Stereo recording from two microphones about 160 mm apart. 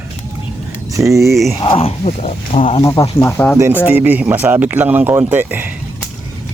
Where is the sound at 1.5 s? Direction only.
40° left (ahead or behind).